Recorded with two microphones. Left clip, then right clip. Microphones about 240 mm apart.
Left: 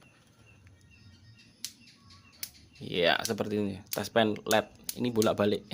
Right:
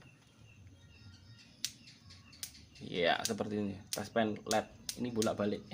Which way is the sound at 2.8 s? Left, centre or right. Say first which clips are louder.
Left 5 dB; left.